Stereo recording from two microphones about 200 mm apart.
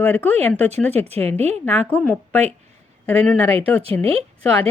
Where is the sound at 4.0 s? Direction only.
30° right (ahead or behind).